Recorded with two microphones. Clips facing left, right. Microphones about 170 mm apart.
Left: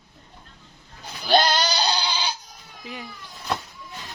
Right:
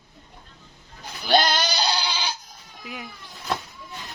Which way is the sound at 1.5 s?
10° right (ahead or behind).